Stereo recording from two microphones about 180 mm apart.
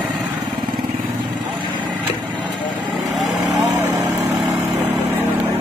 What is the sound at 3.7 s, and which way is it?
Vehicle, 20° right (ahead or behind).